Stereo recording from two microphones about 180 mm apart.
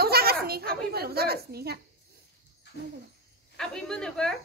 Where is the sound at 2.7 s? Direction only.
70° left (ahead or behind).